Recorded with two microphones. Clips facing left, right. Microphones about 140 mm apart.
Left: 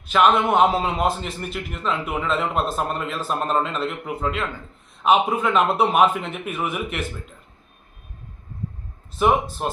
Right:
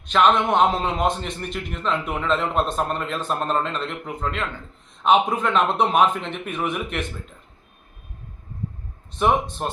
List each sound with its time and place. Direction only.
0.0 s a man's voice: 5° left (ahead or behind)
9.1 s a man's voice: 5° left (ahead or behind)